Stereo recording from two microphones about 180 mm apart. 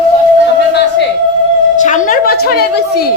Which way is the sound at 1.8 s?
45° left (ahead or behind).